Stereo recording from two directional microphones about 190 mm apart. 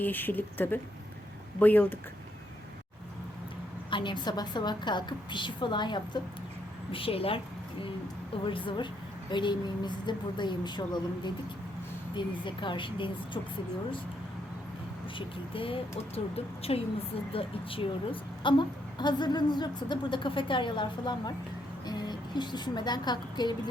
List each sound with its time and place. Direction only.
0.0 s speech: 10° left (ahead or behind)
3.8 s a woman's voice: 25° left (ahead or behind)
15.5 s a woman's voice: 30° left (ahead or behind)